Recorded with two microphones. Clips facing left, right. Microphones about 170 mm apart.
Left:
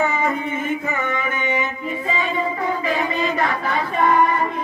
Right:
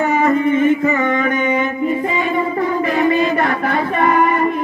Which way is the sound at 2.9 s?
60° right (ahead or behind).